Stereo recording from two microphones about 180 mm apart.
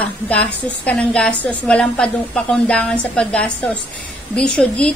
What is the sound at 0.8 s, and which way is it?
A woman's voice, 5° left (ahead or behind).